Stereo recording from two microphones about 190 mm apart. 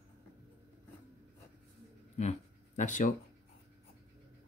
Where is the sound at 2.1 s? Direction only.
40° left (ahead or behind).